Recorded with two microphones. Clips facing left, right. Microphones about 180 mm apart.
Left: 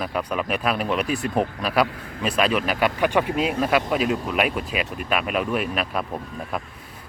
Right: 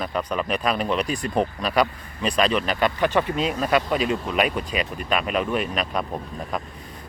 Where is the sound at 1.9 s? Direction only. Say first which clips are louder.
Left 5 dB; 75° left (ahead or behind).